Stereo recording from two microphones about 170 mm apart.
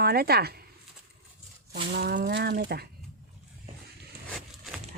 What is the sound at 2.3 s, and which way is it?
Speech, 70° right (ahead or behind).